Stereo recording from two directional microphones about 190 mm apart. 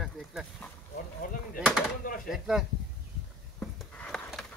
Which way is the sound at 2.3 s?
Centre (ahead or behind).